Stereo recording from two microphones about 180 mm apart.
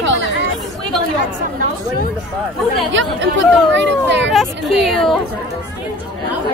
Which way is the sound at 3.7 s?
90° right.